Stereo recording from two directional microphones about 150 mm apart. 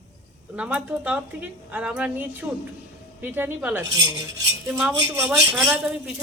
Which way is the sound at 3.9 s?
25° right (ahead or behind).